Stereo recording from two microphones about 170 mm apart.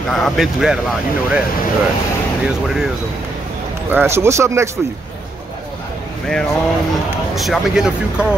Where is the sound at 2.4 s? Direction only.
Centre (ahead or behind).